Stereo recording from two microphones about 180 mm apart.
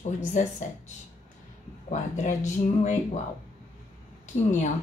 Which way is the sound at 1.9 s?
40° left (ahead or behind).